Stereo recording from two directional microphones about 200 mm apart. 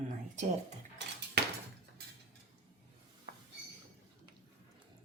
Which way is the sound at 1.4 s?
55° right (ahead or behind).